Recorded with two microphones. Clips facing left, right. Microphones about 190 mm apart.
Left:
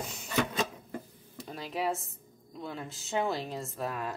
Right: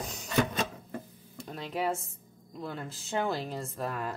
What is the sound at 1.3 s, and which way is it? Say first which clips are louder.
Speech: right 1 dB; centre (ahead or behind).